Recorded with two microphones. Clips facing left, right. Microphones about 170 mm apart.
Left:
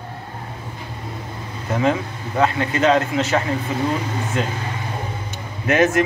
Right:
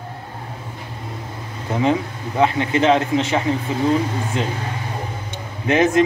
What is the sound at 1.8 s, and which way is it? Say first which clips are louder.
A man's voice: right 1 dB; 20° right (ahead or behind).